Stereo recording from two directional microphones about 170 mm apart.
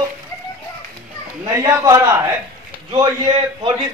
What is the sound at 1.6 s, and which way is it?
Speech, 20° right (ahead or behind).